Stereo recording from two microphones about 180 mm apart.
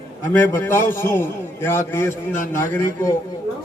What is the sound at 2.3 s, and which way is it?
Speech, 45° left (ahead or behind).